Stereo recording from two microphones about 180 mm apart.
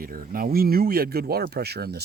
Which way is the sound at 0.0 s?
55° right (ahead or behind).